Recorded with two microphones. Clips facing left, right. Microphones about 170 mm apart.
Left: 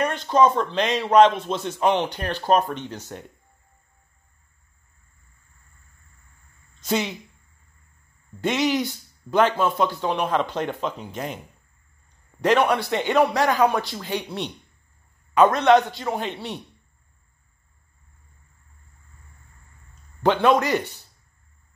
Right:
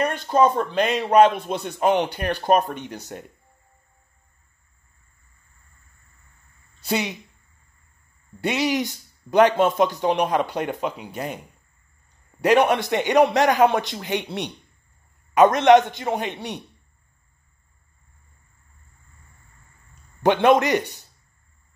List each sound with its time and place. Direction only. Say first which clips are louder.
0.0 s speech: even; 10° right (ahead or behind)
6.8 s speech: even; 10° right (ahead or behind)
8.4 s a man's voice: even; 10° right (ahead or behind)
12.4 s a man's voice: right 2 dB; 15° right (ahead or behind)
20.2 s a man's voice: right 2 dB; 20° right (ahead or behind)